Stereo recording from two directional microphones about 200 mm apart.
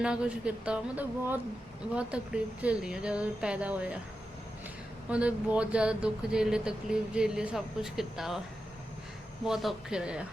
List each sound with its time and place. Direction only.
0.0 s speech: 5° right (ahead or behind)
5.0 s speech: 5° right (ahead or behind)
9.4 s speech: centre (ahead or behind)